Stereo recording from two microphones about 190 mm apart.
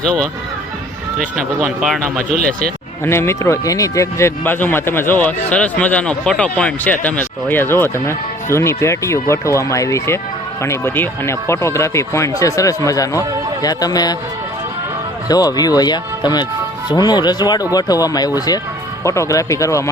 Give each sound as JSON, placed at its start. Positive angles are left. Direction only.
{"t": 1.4, "sound": "speech", "side_deg": 0}
{"t": 2.4, "sound": "speech", "side_deg": -50}
{"t": 3.0, "sound": "speech", "side_deg": 15}
{"t": 15.3, "sound": "speech", "side_deg": 20}